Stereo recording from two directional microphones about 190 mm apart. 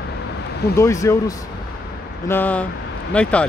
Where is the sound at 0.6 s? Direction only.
55° left (ahead or behind).